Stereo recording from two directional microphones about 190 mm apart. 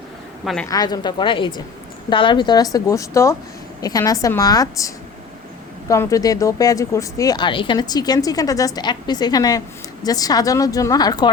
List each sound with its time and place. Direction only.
0.4 s a woman's voice: 5° left (ahead or behind)
0.7 s speech: 20° left (ahead or behind)
5.9 s speech: 15° left (ahead or behind)